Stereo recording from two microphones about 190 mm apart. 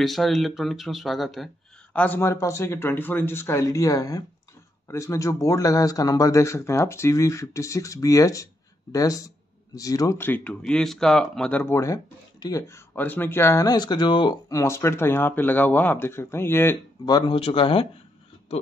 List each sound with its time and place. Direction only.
0.0 s speech: centre (ahead or behind)
2.0 s speech: 10° left (ahead or behind); by 17.8 s 30° left (ahead or behind)